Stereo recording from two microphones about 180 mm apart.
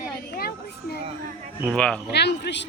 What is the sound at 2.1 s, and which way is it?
Speech, 70° left (ahead or behind).